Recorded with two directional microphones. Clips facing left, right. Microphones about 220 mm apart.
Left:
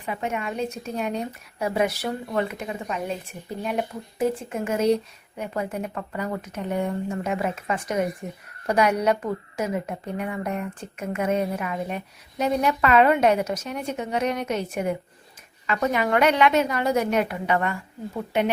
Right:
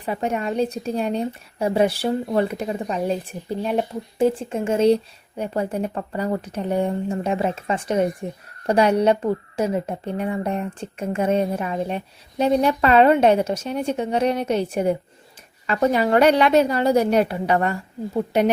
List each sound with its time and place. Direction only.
0.0 s a woman's voice: 35° right (ahead or behind)